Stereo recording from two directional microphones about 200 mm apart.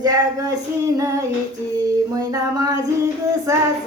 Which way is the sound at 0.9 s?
15° right (ahead or behind).